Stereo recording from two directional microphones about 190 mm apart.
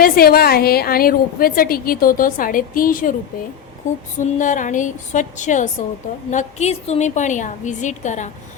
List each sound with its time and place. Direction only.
0.0 s a woman's voice: 50° left (ahead or behind)
4.2 s a woman's voice: 40° left (ahead or behind)